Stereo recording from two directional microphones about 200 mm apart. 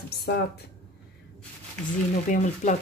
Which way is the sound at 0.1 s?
55° left (ahead or behind).